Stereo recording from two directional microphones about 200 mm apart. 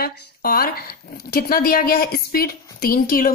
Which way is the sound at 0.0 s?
50° left (ahead or behind).